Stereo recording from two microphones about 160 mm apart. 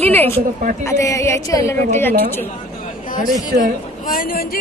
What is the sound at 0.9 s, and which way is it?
A woman's voice, 20° left (ahead or behind).